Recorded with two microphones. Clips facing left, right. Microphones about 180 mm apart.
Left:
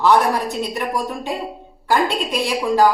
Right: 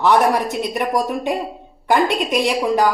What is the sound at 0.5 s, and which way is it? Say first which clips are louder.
A woman's voice: right 3 dB; 20° right (ahead or behind).